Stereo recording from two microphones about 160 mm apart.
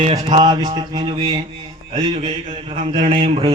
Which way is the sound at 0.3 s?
30° right (ahead or behind).